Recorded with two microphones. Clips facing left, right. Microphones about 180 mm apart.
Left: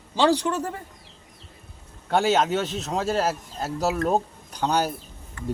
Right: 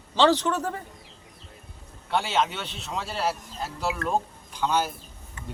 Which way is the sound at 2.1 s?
45° left (ahead or behind).